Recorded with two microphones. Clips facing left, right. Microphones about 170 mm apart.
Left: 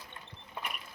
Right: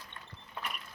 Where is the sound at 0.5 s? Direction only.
10° left (ahead or behind).